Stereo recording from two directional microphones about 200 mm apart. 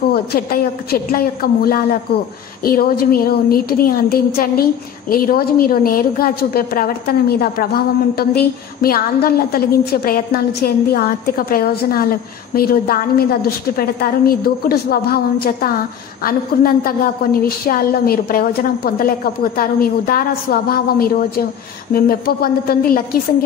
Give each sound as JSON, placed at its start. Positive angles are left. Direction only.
{"t": 0.1, "sound": "a woman's voice", "side_deg": 50}